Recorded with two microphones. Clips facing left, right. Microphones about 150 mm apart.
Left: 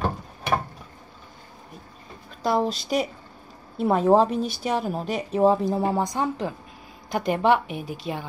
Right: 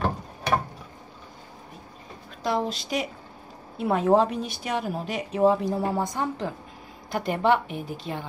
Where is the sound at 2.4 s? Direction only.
40° left (ahead or behind).